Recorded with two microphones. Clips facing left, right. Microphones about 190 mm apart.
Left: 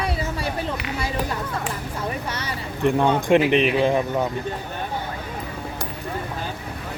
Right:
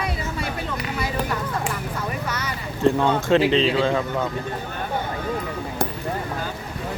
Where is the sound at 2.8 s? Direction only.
15° left (ahead or behind).